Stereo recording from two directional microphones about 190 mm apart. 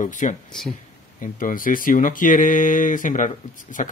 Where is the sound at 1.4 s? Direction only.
45° left (ahead or behind).